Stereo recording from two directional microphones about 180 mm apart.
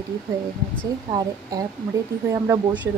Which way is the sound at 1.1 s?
20° right (ahead or behind).